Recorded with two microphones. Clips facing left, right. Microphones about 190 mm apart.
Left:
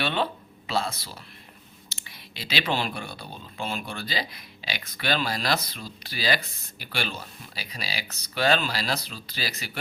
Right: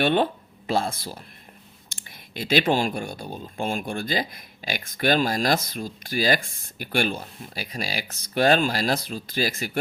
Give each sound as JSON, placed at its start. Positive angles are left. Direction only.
{"t": 0.0, "sound": "speech", "side_deg": -50}